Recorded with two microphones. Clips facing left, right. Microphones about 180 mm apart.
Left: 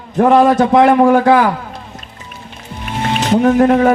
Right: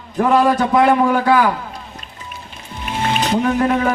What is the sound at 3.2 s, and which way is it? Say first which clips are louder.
Speech: left 7 dB; 45° left (ahead or behind).